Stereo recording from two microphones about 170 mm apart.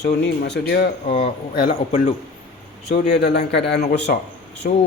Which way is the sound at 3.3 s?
80° left.